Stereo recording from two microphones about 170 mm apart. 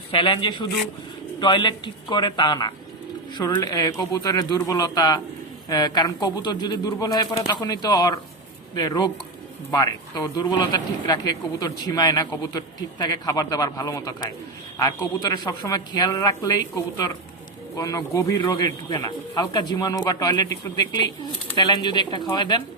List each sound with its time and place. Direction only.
0.1 s a man's voice: 30° left (ahead or behind)